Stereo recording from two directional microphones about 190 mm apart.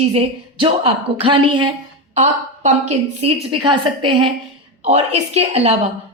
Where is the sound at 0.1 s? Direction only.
30° right (ahead or behind).